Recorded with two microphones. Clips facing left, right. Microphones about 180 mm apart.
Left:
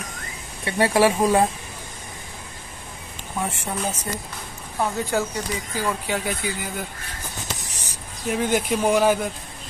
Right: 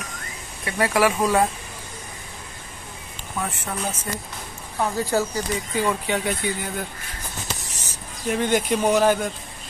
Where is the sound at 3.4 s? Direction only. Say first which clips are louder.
Left 2 dB; 10° left (ahead or behind).